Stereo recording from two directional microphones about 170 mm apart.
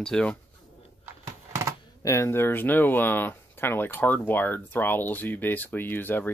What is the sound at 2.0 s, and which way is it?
Speech, 15° left (ahead or behind).